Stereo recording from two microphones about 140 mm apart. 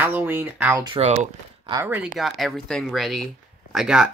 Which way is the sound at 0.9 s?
55° right (ahead or behind).